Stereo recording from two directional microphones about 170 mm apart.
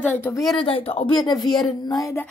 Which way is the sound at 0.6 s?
30° left (ahead or behind).